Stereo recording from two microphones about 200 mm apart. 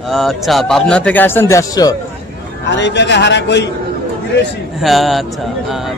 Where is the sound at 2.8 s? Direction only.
60° left (ahead or behind).